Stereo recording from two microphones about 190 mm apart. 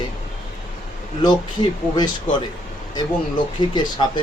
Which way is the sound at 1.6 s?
25° left (ahead or behind).